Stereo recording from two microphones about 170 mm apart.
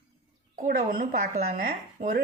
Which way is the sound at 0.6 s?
55° right (ahead or behind).